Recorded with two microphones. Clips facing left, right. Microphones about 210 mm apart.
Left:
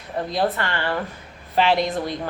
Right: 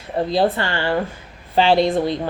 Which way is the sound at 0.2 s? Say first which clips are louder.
Right 5 dB; 30° right (ahead or behind).